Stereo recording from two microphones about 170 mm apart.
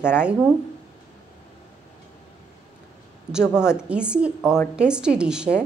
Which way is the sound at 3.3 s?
5° right (ahead or behind).